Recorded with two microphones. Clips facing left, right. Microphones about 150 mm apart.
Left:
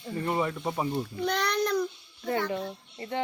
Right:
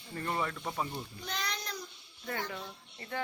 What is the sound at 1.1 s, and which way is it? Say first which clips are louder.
Speech: left 12 dB; 65° left (ahead or behind).